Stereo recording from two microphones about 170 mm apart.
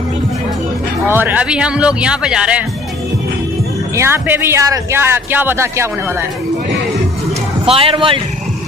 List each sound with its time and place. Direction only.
1.0 s speech: 10° right (ahead or behind)
3.9 s speech: 15° right (ahead or behind)
7.6 s speech: 35° right (ahead or behind)